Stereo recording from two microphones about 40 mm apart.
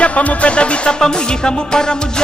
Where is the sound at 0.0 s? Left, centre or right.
Left.